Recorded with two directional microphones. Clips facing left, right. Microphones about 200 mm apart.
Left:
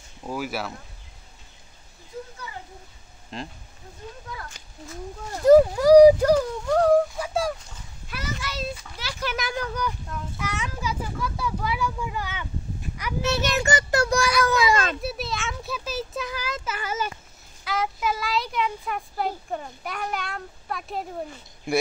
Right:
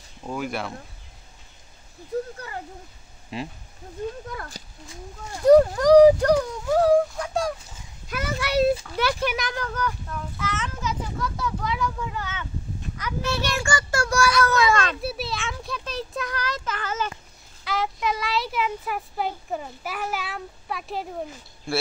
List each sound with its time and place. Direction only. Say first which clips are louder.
0.2 s a child's voice: even; 5° left (ahead or behind)
3.3 s speech: right 3 dB; 5° right (ahead or behind)
4.4 s speech: right 3 dB; 35° right (ahead or behind)
5.4 s a child's voice: even; 5° left (ahead or behind)
6.6 s a sound: even; 5° right (ahead or behind)
8.1 s a sound: right 7 dB; 55° right (ahead or behind)
9.0 s speech: right 13 dB; 65° right (ahead or behind)
9.4 s a child's voice: even; 10° left (ahead or behind)
14.9 s a child's voice: even; centre (ahead or behind)
21.7 s a child's voice: left 3 dB; 20° left (ahead or behind)